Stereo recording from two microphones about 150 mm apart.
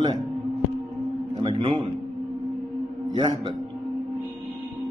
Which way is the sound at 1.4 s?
40° right (ahead or behind).